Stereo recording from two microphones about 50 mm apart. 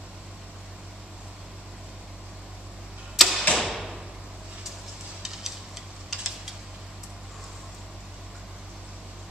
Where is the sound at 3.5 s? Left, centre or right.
Centre.